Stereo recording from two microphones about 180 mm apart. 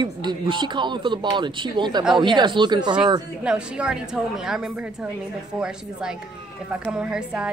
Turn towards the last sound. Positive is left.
turn(degrees=-5)  # may be behind; listen again after turning